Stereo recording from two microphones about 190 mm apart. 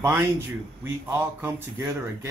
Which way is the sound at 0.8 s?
10° right (ahead or behind).